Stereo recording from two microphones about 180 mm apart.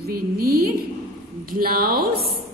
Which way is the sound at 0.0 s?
55° right (ahead or behind).